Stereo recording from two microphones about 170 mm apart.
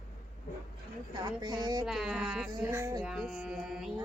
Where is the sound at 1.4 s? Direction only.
25° right (ahead or behind).